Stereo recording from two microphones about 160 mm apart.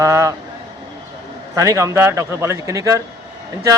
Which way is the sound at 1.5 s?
20° right (ahead or behind).